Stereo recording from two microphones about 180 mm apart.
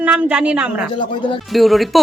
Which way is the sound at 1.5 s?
Centre (ahead or behind).